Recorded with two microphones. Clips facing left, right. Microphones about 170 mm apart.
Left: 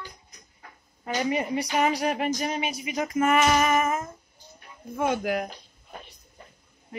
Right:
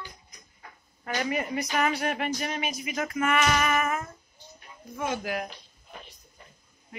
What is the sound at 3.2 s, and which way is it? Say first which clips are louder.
Child singing: left 4 dB; 35° left (ahead or behind).